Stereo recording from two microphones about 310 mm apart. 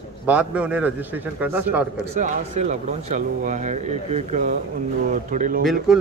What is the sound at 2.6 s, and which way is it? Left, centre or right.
Speech, right.